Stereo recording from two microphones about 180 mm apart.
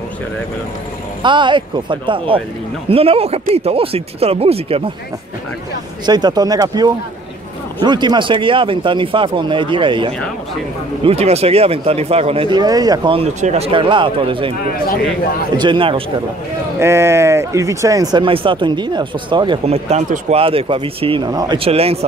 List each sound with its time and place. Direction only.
1.2 s speech: 25° right (ahead or behind)
6.0 s speech: 25° right (ahead or behind)
15.5 s speech: 25° right (ahead or behind)
16.8 s speech: 15° right (ahead or behind); by 22.0 s 35° right (ahead or behind)